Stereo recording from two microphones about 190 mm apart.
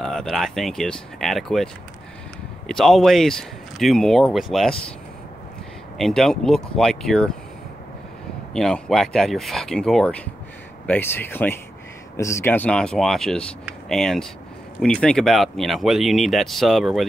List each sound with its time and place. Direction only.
0.0 s speech: 5° left (ahead or behind)
5.9 s speech: centre (ahead or behind)
8.5 s speech: 5° left (ahead or behind)